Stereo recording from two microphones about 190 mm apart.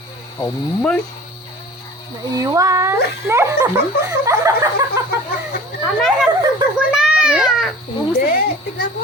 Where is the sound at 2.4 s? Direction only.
15° right (ahead or behind).